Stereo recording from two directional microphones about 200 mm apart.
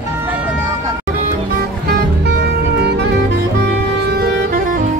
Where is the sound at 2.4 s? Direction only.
55° right (ahead or behind).